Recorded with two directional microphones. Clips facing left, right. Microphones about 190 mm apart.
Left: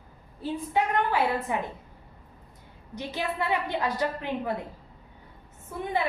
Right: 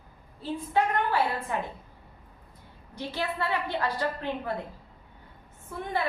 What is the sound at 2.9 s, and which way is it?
A woman's voice, 15° left (ahead or behind).